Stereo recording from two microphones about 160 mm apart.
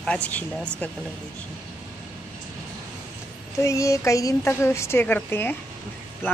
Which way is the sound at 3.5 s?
20° left (ahead or behind).